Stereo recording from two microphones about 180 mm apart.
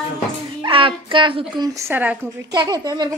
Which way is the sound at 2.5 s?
20° right (ahead or behind).